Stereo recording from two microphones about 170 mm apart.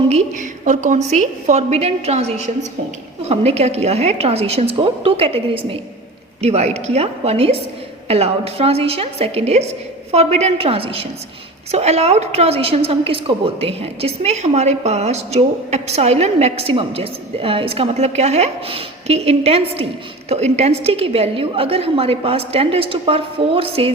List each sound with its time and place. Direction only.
0.1 s a woman's voice: 45° right (ahead or behind)